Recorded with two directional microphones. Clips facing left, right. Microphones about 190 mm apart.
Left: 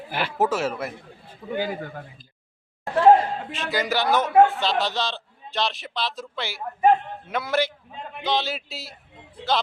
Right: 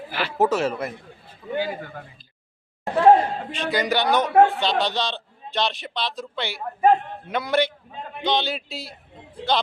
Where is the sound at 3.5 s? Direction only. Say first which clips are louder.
Right 3 dB; centre (ahead or behind).